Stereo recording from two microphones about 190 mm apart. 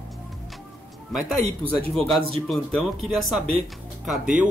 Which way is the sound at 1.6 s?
Centre (ahead or behind).